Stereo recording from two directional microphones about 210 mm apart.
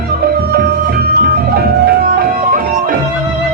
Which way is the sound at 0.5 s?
50° right (ahead or behind).